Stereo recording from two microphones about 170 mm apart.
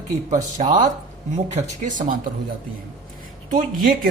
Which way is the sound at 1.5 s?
50° right (ahead or behind).